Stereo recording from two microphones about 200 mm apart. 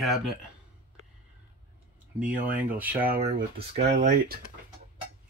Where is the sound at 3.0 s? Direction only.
45° right (ahead or behind).